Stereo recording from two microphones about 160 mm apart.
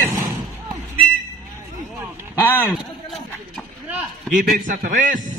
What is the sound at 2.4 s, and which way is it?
Speech, 10° left (ahead or behind).